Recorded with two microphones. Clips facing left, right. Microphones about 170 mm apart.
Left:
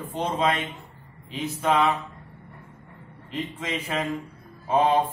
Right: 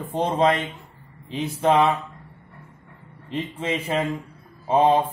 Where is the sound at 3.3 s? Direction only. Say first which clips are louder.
Right 4 dB; 25° right (ahead or behind).